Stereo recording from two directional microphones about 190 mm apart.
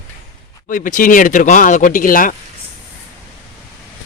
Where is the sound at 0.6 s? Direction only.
45° left (ahead or behind).